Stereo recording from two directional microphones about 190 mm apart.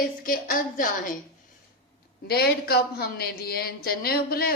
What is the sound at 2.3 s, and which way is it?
A woman's voice, 55° left (ahead or behind).